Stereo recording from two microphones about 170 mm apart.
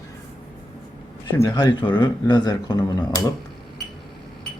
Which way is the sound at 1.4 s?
25° left (ahead or behind).